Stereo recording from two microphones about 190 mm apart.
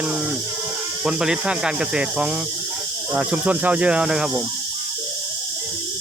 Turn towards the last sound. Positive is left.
turn(degrees=-5)  # may be behind; listen again after turning